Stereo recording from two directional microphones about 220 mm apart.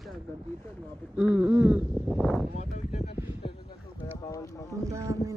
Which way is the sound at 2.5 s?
30° left (ahead or behind).